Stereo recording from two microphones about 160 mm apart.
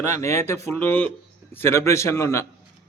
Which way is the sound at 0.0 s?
15° left (ahead or behind).